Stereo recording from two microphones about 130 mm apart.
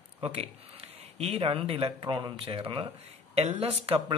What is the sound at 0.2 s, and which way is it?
Speech, 55° right (ahead or behind).